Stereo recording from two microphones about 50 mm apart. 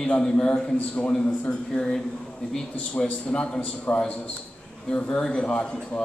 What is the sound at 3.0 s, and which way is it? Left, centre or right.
A man's voice, centre.